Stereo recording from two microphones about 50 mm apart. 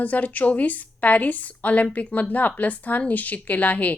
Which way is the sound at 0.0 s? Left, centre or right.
Left.